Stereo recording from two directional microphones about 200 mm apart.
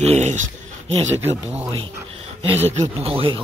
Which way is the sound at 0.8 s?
30° right (ahead or behind).